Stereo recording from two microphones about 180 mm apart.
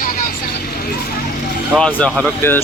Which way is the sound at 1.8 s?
5° left (ahead or behind).